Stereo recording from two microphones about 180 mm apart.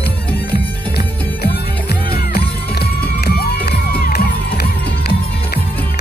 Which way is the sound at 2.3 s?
60° left (ahead or behind).